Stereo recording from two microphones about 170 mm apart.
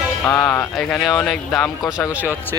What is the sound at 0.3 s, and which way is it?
Speech, 10° left (ahead or behind).